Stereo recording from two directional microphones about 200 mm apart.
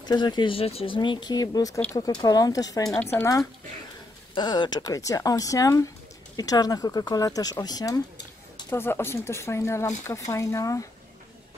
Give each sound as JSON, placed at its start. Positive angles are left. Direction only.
{"t": 0.0, "sound": "speech", "side_deg": 20}